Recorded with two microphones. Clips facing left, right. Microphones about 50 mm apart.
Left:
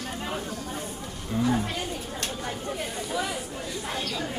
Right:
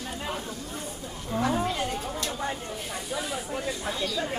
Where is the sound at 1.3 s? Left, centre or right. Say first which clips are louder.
Left 1 dB; centre.